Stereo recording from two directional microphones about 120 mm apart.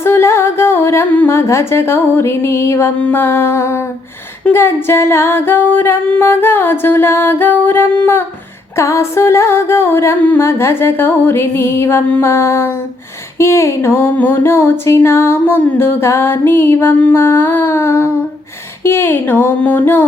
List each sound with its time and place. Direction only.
0.0 s humming: 20° left (ahead or behind)
4.4 s music: 20° left (ahead or behind)